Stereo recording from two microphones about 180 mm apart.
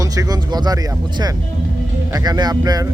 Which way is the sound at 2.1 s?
20° right (ahead or behind).